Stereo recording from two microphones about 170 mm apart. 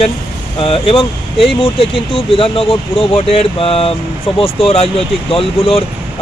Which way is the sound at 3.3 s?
35° left (ahead or behind).